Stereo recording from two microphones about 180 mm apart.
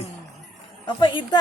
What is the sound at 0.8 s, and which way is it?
Speech, 25° left (ahead or behind).